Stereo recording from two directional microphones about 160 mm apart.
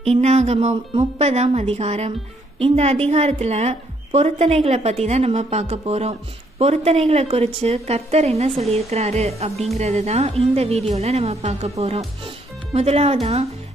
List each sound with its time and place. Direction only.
0.0 s a woman's voice: 45° right (ahead or behind)